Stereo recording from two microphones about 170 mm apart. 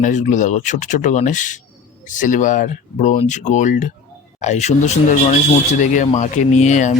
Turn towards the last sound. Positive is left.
turn(degrees=45)  # may be behind; listen again after turning